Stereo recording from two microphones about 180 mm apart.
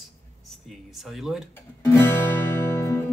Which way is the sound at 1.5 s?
10° left (ahead or behind).